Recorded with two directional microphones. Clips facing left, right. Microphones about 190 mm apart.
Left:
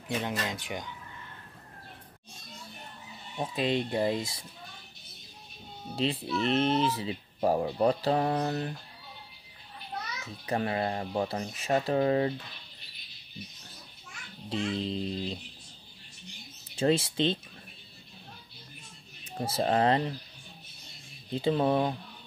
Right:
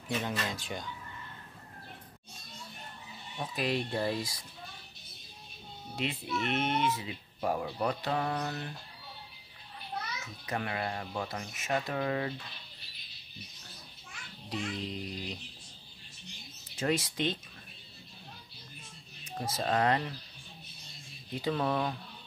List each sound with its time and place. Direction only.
0.4 s speech: 15° left (ahead or behind)
3.3 s speech: 25° left (ahead or behind)
5.9 s speech: 30° left (ahead or behind)
10.4 s speech: 30° left (ahead or behind)
14.5 s speech: 30° left (ahead or behind)
16.7 s speech: 30° left (ahead or behind)
19.2 s speech: 30° left (ahead or behind)
21.3 s speech: 25° left (ahead or behind)